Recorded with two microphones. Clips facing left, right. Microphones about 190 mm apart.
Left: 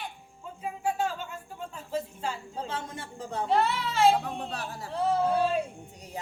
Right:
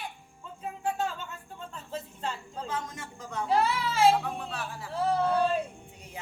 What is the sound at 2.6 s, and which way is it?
Speech, 30° left (ahead or behind).